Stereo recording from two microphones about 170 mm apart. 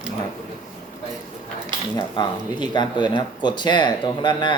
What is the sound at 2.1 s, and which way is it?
Speech, 25° left (ahead or behind).